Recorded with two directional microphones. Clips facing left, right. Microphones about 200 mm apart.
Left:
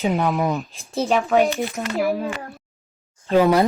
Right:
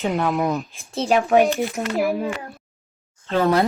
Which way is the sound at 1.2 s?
15° right (ahead or behind).